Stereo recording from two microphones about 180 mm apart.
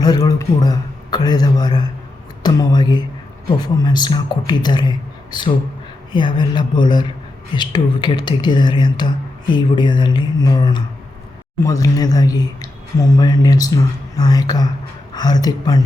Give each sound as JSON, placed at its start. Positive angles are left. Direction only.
{"t": 0.0, "sound": "speech", "side_deg": 20}